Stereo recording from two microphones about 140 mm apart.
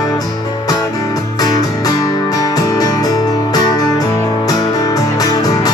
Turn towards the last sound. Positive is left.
turn(degrees=25)  # may be behind; listen again after turning